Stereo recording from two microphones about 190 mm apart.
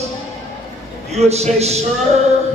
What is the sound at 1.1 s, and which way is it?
Speech, 35° right (ahead or behind).